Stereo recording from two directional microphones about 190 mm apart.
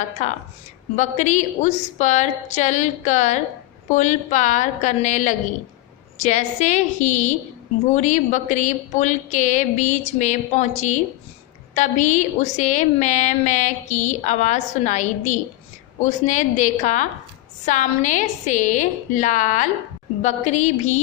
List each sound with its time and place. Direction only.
0.9 s a woman's voice: 40° left (ahead or behind)